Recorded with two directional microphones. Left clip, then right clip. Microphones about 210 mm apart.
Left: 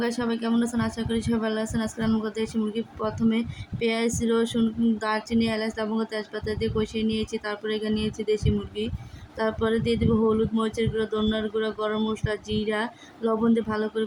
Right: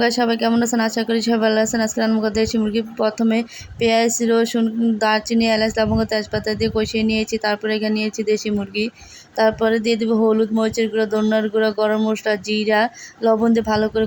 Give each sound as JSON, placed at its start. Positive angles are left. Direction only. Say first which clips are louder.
{"t": 0.0, "sound": "speech", "louder": "right 10 dB", "side_deg": -25}
{"t": 9.4, "sound": "speech", "louder": "right 9 dB", "side_deg": -20}